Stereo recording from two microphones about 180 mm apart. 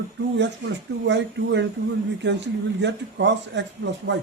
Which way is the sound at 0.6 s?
85° right.